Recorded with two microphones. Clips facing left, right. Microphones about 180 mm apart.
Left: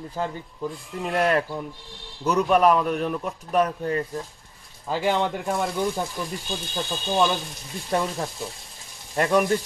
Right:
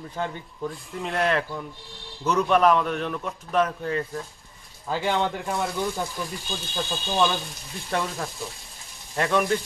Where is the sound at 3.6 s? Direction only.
35° left (ahead or behind).